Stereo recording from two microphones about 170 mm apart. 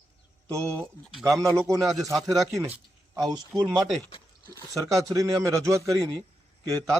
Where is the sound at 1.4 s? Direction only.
20° right (ahead or behind).